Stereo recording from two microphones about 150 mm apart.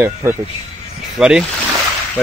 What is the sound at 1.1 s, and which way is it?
Speech, 5° right (ahead or behind).